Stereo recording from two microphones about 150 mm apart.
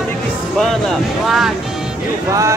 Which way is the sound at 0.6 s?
Centre (ahead or behind).